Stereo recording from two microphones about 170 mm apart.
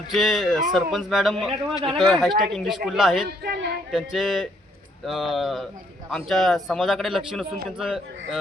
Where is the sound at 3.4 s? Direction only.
70° right (ahead or behind).